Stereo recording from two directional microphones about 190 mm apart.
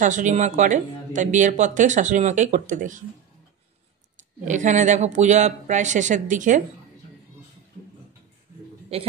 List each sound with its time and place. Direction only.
0.0 s speech: 40° right (ahead or behind)
4.5 s speech: 40° right (ahead or behind)